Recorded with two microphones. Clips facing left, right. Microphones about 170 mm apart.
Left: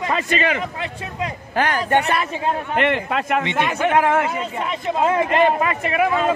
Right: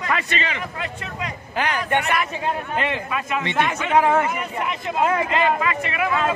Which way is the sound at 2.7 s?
65° left (ahead or behind).